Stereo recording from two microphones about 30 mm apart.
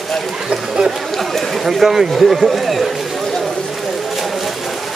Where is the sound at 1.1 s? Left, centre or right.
Centre.